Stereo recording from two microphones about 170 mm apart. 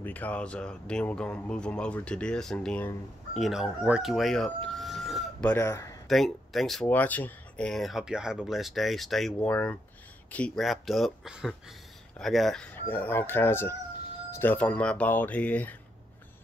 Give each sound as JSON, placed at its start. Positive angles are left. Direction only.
{"t": 0.0, "sound": "speech", "side_deg": 10}
{"t": 5.5, "sound": "speech", "side_deg": 15}
{"t": 6.0, "sound": "speech", "side_deg": 0}